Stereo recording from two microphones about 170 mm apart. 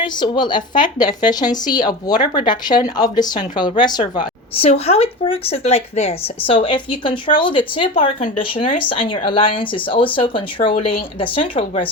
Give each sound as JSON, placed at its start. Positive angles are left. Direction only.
{"t": 0.0, "sound": "a woman's voice", "side_deg": 25}